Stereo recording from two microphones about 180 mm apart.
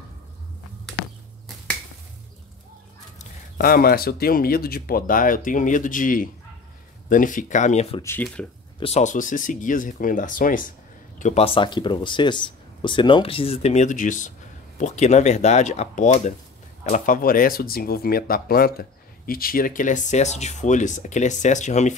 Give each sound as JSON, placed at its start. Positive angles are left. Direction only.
{"t": 3.2, "sound": "speech", "side_deg": 55}
{"t": 8.0, "sound": "speech", "side_deg": 15}
{"t": 8.7, "sound": "speech", "side_deg": 35}
{"t": 11.1, "sound": "speech", "side_deg": 40}